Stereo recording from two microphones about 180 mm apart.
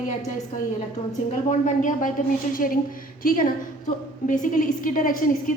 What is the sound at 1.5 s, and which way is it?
A woman's voice, 45° left (ahead or behind).